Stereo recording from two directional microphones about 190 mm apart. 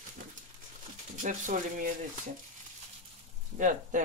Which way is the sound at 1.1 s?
45° right (ahead or behind).